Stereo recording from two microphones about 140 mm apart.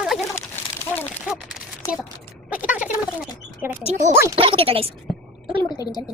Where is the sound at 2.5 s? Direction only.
10° right (ahead or behind).